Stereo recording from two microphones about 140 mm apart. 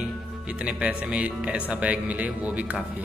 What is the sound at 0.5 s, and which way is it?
A man's voice, 10° right (ahead or behind).